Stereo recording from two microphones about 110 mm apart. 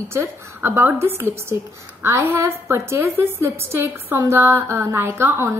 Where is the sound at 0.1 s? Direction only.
20° right (ahead or behind).